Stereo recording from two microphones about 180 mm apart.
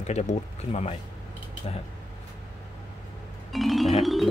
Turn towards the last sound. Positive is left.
turn(degrees=0)  # may be behind; listen again after turning